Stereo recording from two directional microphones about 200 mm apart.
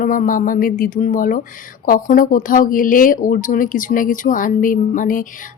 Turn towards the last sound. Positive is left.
turn(degrees=40)  # may be behind; listen again after turning